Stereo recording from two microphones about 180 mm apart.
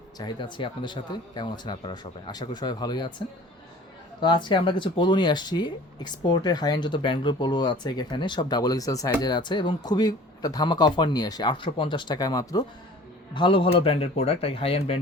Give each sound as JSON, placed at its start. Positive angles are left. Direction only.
{"t": 0.2, "sound": "speech", "side_deg": 25}
{"t": 4.2, "sound": "speech", "side_deg": 25}